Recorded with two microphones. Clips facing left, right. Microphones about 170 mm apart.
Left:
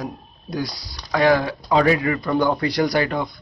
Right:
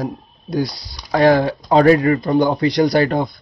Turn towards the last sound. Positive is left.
turn(degrees=-35)  # may be behind; listen again after turning